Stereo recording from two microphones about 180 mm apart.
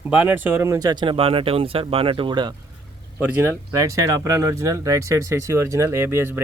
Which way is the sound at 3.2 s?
10° right (ahead or behind).